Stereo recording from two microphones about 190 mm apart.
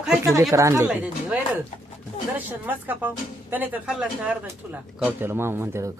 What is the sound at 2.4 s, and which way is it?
Speech, 10° right (ahead or behind).